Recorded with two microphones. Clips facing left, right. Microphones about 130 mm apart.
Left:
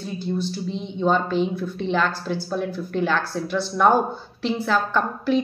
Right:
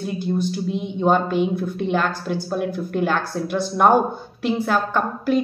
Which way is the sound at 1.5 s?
50° right (ahead or behind).